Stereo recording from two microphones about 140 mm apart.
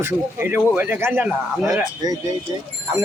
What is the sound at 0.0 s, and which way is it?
Speech, 15° right (ahead or behind).